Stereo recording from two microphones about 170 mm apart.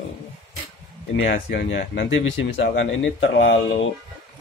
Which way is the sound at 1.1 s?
90° left.